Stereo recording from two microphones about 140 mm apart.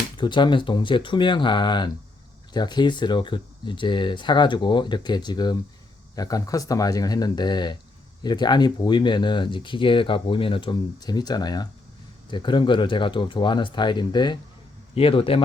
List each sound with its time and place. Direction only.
0.2 s speech: 35° left (ahead or behind)